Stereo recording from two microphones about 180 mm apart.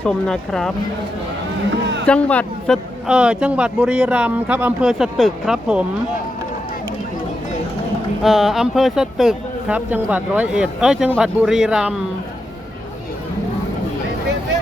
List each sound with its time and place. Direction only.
0.0 s speech: 5° left (ahead or behind)
1.7 s a sound: 80° right
2.0 s a man's voice: 5° left (ahead or behind)
3.1 s speech: 5° right (ahead or behind)
8.2 s speech: centre (ahead or behind)